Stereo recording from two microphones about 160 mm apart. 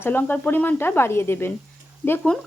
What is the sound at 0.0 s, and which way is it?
Speech, 10° left (ahead or behind).